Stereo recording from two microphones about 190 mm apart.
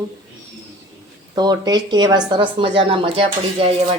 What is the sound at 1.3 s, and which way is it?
Speech, 20° right (ahead or behind).